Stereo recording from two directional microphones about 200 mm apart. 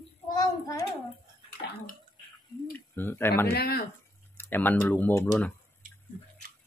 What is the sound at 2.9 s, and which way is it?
Speech, 10° left (ahead or behind).